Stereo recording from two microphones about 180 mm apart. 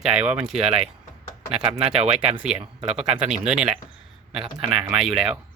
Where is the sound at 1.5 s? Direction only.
30° right (ahead or behind).